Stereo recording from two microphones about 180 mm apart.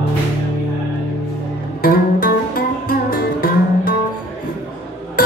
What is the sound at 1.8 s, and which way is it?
Music, 55° left (ahead or behind).